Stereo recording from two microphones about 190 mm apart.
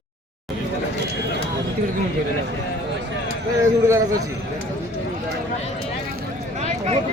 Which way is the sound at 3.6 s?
15° right (ahead or behind).